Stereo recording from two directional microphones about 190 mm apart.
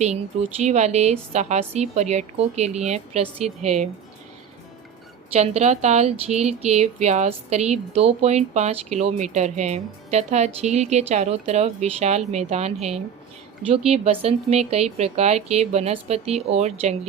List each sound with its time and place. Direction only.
0.6 s speech: 35° right (ahead or behind)
5.3 s speech: 35° right (ahead or behind)